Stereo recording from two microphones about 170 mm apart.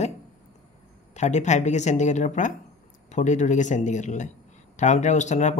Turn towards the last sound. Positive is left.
turn(degrees=45)  # may be behind; listen again after turning